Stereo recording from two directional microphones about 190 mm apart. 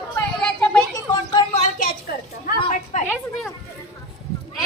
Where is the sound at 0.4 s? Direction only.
5° left (ahead or behind).